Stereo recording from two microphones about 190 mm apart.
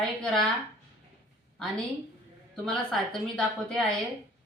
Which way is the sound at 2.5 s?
Centre (ahead or behind).